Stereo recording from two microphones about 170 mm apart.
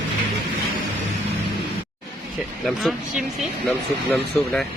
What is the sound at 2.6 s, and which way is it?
Speech, centre (ahead or behind).